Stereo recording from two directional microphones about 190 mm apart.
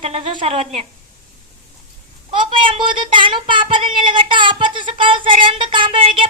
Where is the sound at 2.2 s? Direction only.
25° right (ahead or behind).